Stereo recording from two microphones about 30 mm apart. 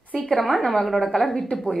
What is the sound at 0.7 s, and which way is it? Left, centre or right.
Speech, centre.